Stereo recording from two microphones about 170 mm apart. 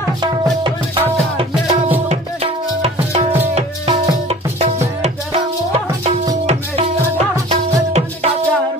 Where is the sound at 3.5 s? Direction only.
35° right (ahead or behind).